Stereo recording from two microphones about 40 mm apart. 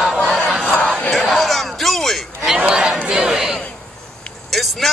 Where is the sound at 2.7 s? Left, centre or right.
Centre.